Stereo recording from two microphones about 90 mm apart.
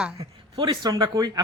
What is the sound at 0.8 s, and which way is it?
Speech, 50° right (ahead or behind).